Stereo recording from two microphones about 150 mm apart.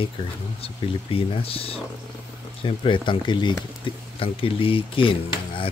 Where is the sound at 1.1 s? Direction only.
40° left (ahead or behind).